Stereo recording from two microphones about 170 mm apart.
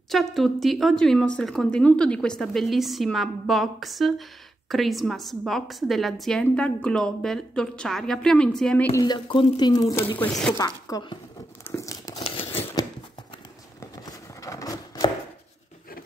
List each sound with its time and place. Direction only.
0.1 s speech: centre (ahead or behind)
8.9 s speech: 25° left (ahead or behind)
10.1 s speech: 5° left (ahead or behind)
10.5 s speech: 20° left (ahead or behind)
11.6 s crumpling: 15° left (ahead or behind)
12.4 s a sound: 15° left (ahead or behind)